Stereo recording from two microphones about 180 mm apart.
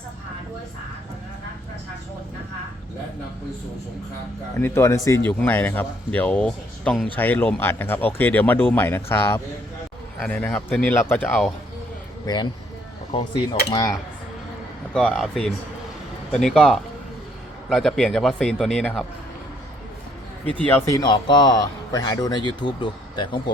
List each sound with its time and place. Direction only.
4.5 s a man's voice: 15° left (ahead or behind)
12.2 s a man's voice: 25° left (ahead or behind)
14.9 s a man's voice: 5° left (ahead or behind)
20.4 s speech: 10° left (ahead or behind)
21.0 s a man's voice: 25° left (ahead or behind)